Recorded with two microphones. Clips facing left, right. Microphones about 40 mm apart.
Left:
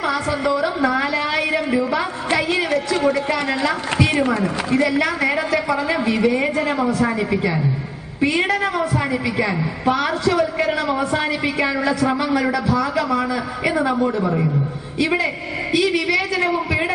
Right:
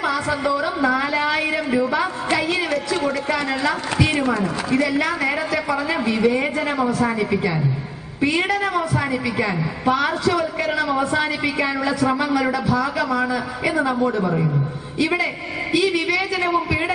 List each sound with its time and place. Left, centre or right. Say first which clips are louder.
0.5 s a sound: left 1 dB; left
4.2 s a woman's voice: left 2 dB; left
9.9 s a man's voice: left 2 dB; left
14.0 s a man's voice: even; centre
15.0 s a woman's voice: left 1 dB; left
15.7 s a man's voice: left 1 dB; left